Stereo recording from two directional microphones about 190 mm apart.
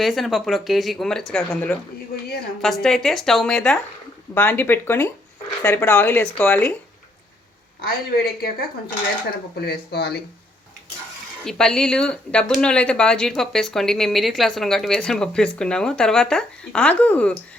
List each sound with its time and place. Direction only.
0.0 s speech: centre (ahead or behind)
7.9 s a woman's voice: 55° left (ahead or behind)
11.4 s speech: 5° left (ahead or behind)